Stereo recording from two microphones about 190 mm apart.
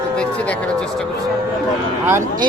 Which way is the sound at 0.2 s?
5° left (ahead or behind).